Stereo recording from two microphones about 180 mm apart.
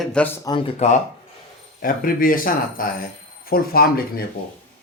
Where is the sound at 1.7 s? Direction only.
50° left (ahead or behind).